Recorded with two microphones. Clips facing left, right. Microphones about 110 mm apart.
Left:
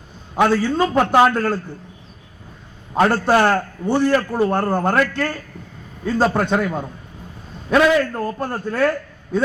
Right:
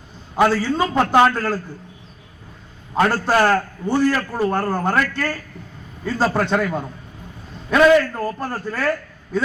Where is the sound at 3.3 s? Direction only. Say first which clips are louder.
Left 1 dB; 25° left (ahead or behind).